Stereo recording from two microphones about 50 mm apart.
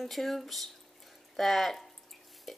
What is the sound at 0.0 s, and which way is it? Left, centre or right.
Speech, centre.